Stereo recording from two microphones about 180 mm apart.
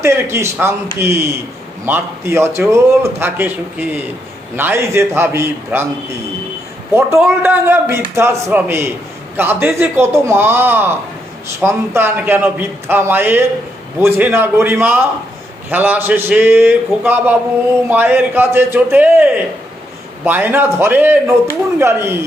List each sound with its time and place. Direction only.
0.0 s a man's voice: 15° right (ahead or behind)
6.9 s a man's voice: 15° right (ahead or behind)